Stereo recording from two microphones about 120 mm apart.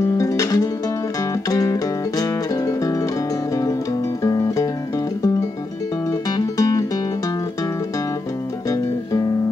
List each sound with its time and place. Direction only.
0.0 s music: 25° left (ahead or behind)
4.2 s guitar: 25° left (ahead or behind)
6.3 s music: 30° left (ahead or behind)
8.6 s music: 30° left (ahead or behind)